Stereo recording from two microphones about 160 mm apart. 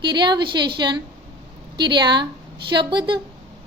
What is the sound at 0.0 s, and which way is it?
A woman's voice, 30° right (ahead or behind).